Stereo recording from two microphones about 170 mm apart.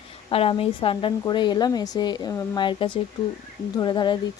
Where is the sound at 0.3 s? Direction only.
35° left (ahead or behind).